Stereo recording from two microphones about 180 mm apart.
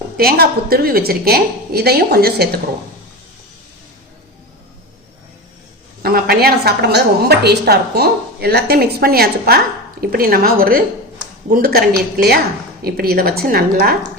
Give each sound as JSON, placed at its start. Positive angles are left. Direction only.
{"t": 0.2, "sound": "a woman's voice", "side_deg": -60}
{"t": 6.0, "sound": "a woman's voice", "side_deg": -60}